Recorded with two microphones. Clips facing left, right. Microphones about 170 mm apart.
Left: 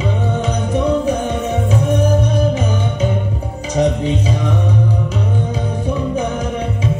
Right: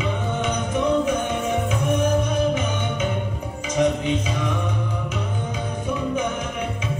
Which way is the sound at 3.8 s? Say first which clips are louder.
Left 4 dB; 35° left (ahead or behind).